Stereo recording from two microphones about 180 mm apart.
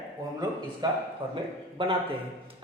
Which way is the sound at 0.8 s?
25° right (ahead or behind).